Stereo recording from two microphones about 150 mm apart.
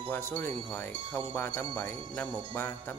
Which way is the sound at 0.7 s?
15° left (ahead or behind).